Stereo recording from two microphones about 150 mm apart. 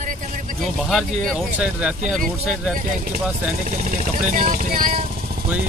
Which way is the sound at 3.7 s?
50° right (ahead or behind).